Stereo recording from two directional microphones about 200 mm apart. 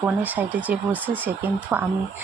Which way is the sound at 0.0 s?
10° right (ahead or behind).